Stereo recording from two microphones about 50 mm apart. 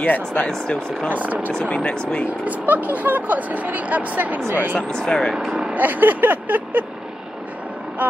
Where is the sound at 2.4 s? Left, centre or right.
Right.